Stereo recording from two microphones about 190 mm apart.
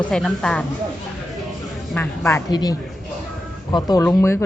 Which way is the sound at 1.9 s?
10° left (ahead or behind).